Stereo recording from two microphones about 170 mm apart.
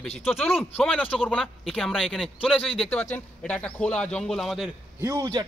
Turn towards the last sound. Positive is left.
turn(degrees=-25)  # may be behind; listen again after turning